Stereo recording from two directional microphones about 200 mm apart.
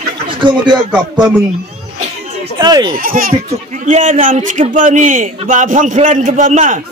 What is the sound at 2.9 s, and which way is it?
A man's voice, 45° right (ahead or behind).